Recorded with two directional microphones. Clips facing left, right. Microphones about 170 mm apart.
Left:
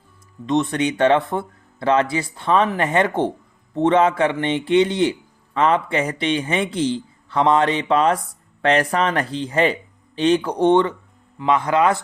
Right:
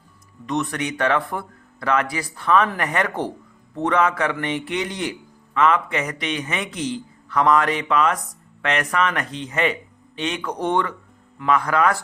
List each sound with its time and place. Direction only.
0.4 s a man's voice: 25° left (ahead or behind)